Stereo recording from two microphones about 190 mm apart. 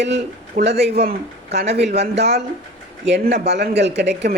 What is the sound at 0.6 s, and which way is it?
Speech, 60° right (ahead or behind).